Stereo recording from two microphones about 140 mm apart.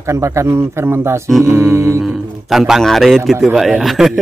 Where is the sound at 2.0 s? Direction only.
Centre (ahead or behind).